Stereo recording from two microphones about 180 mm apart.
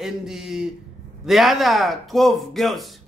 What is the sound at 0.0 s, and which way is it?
A woman's voice, 5° right (ahead or behind).